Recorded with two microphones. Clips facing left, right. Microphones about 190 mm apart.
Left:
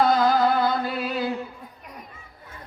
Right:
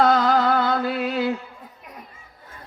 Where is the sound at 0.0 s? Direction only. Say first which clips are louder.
Right 1 dB; 70° right (ahead or behind).